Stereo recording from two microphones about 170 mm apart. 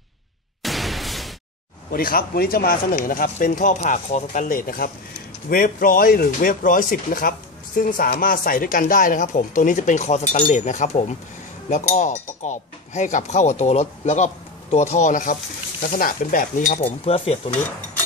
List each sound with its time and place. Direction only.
0.6 s a sound: centre (ahead or behind)
1.9 s speech: 60° left (ahead or behind)
16.8 s speech: 35° left (ahead or behind)